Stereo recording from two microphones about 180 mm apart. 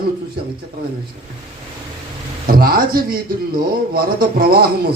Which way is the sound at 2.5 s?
55° right (ahead or behind).